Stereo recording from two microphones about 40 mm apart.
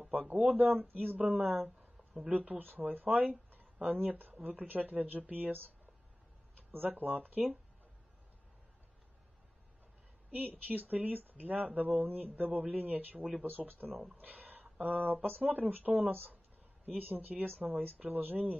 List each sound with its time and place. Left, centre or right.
0.0 s speech: right
0.6 s speech: right
1.1 s a woman's voice: right
6.9 s speech: right
10.3 s speech: right
12.4 s speech: right
14.2 s a sound: right
15.2 s speech: right